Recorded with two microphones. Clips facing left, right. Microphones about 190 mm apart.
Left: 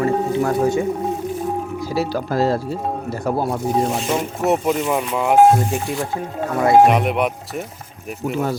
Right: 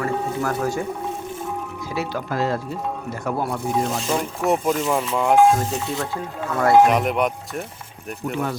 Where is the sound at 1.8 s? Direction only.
35° left (ahead or behind).